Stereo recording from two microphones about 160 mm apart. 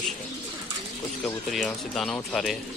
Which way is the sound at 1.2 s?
5° left (ahead or behind).